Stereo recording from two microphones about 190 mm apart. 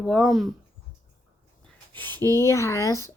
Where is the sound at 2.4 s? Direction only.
15° left (ahead or behind).